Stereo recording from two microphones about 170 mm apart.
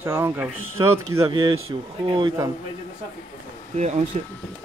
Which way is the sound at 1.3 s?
25° right (ahead or behind).